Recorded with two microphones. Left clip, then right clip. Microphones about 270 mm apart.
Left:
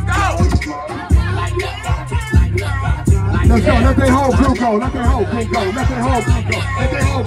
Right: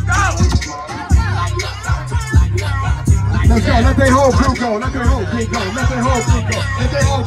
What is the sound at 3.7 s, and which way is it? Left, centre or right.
Music, left.